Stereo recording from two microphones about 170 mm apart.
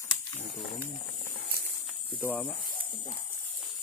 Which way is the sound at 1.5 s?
65° right (ahead or behind).